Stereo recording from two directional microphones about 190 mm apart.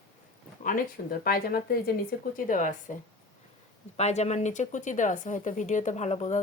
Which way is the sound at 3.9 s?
35° left (ahead or behind).